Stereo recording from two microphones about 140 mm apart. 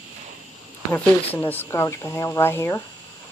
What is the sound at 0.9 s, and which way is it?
Speech, 15° left (ahead or behind).